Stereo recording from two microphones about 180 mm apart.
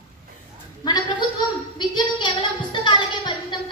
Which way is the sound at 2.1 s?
25° left (ahead or behind).